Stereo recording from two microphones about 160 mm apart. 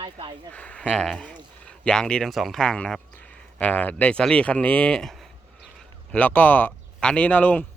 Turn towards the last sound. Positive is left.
turn(degrees=10)  # may be behind; listen again after turning